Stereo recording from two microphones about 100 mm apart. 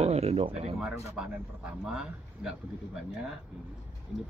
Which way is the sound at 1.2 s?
10° right (ahead or behind).